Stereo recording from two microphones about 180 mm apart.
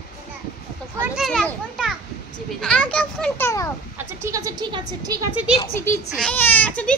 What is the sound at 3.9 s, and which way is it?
A woman's voice, 15° right (ahead or behind).